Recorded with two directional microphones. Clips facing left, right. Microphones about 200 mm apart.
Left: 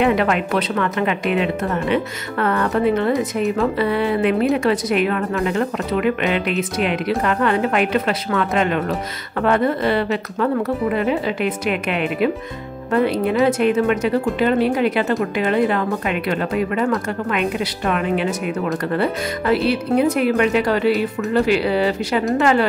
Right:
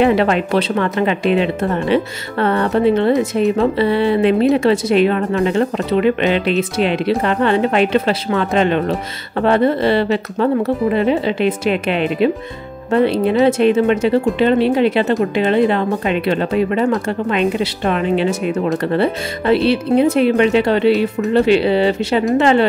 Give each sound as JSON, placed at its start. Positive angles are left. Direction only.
{"t": 0.0, "sound": "speech", "side_deg": -30}